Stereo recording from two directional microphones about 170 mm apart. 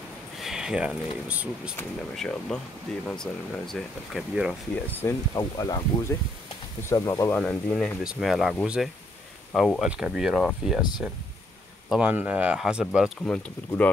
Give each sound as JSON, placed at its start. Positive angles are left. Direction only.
{"t": 0.4, "sound": "speech", "side_deg": -5}
{"t": 1.8, "sound": "speech", "side_deg": 5}
{"t": 4.8, "sound": "speech", "side_deg": 15}
{"t": 11.9, "sound": "speech", "side_deg": -5}
{"t": 13.2, "sound": "speech", "side_deg": 5}